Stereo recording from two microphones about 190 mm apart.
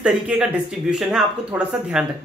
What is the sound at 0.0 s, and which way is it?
Speech, 5° right (ahead or behind).